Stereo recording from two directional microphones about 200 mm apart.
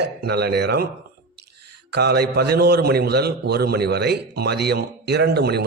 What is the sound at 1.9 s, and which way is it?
A man's voice, 55° right (ahead or behind).